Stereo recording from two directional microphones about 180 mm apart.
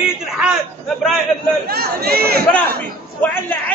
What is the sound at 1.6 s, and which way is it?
Speech, 60° right (ahead or behind).